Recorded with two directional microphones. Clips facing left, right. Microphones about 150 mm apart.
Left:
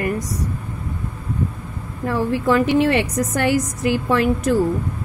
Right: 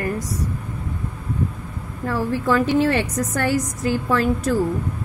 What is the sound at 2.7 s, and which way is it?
A woman's voice, 15° left (ahead or behind).